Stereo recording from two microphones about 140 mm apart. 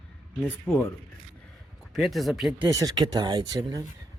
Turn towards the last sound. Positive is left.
turn(degrees=-25)  # may be behind; listen again after turning